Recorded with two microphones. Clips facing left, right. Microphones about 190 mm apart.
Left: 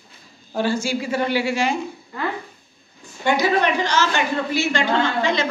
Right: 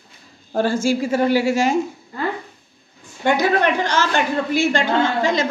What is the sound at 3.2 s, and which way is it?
A woman's voice, 55° right (ahead or behind).